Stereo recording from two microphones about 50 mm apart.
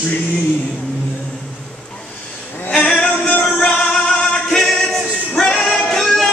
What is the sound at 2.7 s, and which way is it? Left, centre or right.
Music, left.